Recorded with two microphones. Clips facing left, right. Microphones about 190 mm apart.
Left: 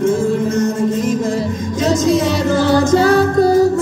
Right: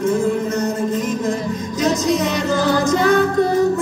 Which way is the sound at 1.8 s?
30° left (ahead or behind).